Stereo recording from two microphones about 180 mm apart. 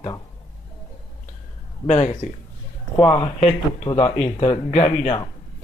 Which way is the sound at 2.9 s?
20° left (ahead or behind).